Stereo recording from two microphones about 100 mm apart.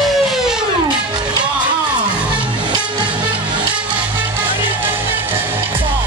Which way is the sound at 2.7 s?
50° right (ahead or behind).